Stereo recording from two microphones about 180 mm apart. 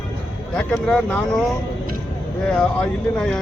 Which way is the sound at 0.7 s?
Centre (ahead or behind).